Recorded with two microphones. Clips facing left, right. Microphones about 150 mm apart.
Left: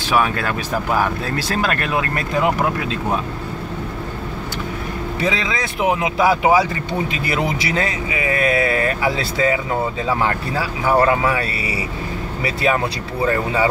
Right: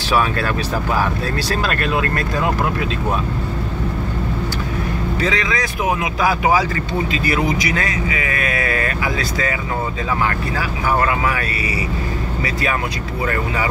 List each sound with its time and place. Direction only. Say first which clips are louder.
0.1 s speech: even; 15° left (ahead or behind)
1.5 s speech: even; 15° left (ahead or behind)
5.2 s speech: even; 25° left (ahead or behind)
13.2 s speech: left 4 dB; 25° left (ahead or behind)